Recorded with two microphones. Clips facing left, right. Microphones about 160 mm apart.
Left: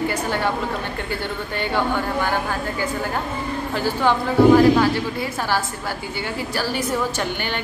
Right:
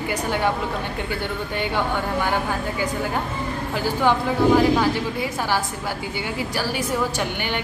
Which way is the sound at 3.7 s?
15° right (ahead or behind).